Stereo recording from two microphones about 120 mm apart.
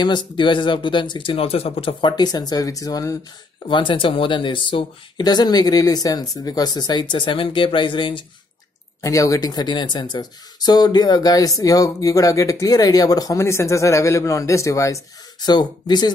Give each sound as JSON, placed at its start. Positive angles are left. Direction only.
{"t": 0.0, "sound": "speech", "side_deg": 40}
{"t": 3.6, "sound": "speech", "side_deg": 45}
{"t": 9.0, "sound": "speech", "side_deg": 30}
{"t": 15.4, "sound": "speech", "side_deg": 35}